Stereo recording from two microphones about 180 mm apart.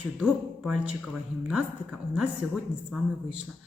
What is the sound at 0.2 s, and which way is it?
Speech, 5° right (ahead or behind).